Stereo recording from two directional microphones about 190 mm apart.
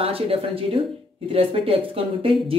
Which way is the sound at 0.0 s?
30° right (ahead or behind).